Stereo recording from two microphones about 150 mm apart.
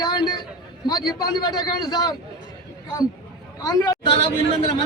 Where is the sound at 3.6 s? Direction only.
25° left (ahead or behind).